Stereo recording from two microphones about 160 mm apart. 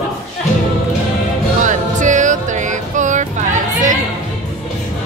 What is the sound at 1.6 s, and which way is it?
Music, 50° right (ahead or behind).